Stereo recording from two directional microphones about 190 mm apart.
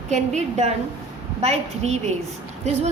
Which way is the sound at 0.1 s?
35° right (ahead or behind).